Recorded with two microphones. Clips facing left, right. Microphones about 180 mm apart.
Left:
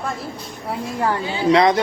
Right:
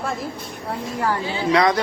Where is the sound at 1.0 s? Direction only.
20° left (ahead or behind).